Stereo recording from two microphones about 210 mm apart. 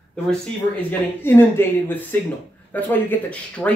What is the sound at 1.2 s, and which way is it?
Speech, 10° left (ahead or behind).